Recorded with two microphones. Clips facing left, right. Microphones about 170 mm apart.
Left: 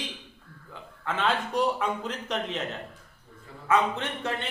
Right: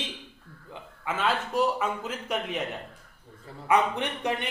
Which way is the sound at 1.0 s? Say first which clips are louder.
Even; 5° right (ahead or behind).